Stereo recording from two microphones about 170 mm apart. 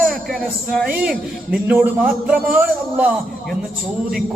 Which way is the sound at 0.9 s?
5° right (ahead or behind).